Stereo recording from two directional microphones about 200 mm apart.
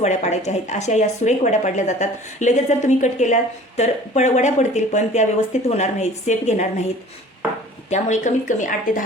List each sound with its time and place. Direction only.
0.0 s speech: 35° left (ahead or behind)
7.9 s speech: 35° left (ahead or behind)